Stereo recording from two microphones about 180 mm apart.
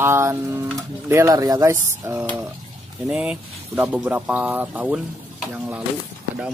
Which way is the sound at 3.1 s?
5° right (ahead or behind).